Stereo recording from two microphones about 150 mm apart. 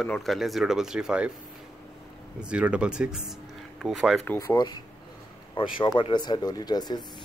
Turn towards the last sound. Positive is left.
turn(degrees=25)  # may be behind; listen again after turning